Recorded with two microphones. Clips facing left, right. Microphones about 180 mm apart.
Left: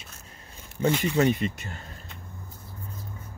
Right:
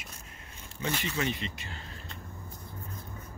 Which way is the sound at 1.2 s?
50° left (ahead or behind).